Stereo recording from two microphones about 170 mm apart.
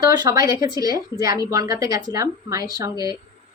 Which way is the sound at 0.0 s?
20° right (ahead or behind).